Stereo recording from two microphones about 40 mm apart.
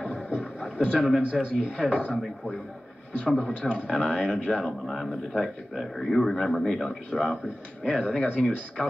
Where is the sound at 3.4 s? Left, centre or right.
Left.